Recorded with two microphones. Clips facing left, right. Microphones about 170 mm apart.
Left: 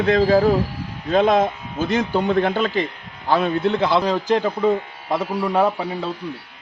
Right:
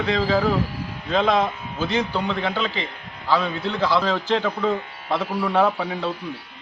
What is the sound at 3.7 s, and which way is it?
A man's voice, 20° left (ahead or behind).